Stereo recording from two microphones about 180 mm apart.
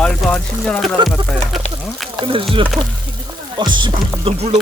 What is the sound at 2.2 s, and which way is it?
Speech, 30° right (ahead or behind).